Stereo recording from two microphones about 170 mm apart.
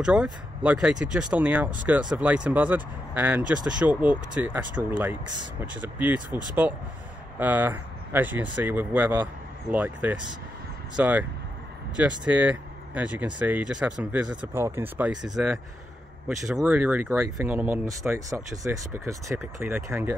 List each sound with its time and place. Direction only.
0.0 s speech: 5° right (ahead or behind)
12.3 s speech: 10° right (ahead or behind)
16.6 s speech: 10° right (ahead or behind)